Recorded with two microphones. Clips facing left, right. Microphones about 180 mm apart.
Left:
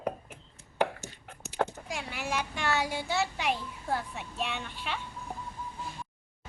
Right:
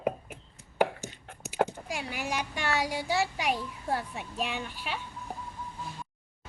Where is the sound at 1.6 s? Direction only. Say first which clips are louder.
Right 3 dB; 10° right (ahead or behind).